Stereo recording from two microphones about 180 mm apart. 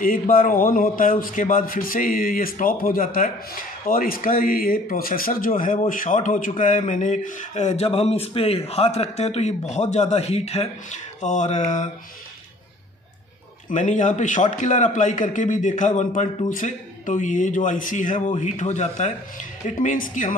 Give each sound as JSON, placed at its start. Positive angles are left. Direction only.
{"t": 0.0, "sound": "speech", "side_deg": 50}
{"t": 13.7, "sound": "speech", "side_deg": 45}